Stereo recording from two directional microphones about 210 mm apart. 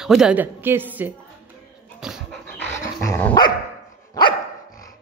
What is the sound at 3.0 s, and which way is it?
Dog, 10° left (ahead or behind).